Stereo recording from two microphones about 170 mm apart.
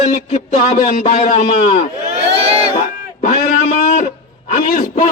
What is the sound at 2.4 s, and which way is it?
Crowd, 35° right (ahead or behind).